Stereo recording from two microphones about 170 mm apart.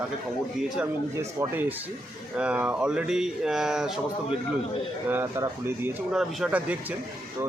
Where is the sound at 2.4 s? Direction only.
5° right (ahead or behind).